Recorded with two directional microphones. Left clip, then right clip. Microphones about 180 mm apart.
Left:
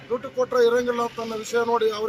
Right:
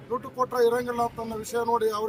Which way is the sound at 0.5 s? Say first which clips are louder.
Left 4 dB; 25° right (ahead or behind).